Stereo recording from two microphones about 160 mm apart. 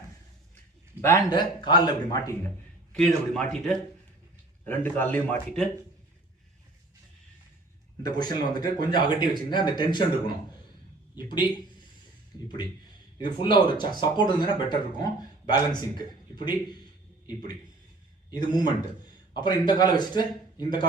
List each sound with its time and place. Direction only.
1.0 s speech: 15° left (ahead or behind)
1.4 s speech: 30° left (ahead or behind)
2.9 s a man's voice: 5° left (ahead or behind)
8.0 s speech: 25° left (ahead or behind)
13.1 s speech: 30° left (ahead or behind)
18.3 s speech: 25° left (ahead or behind)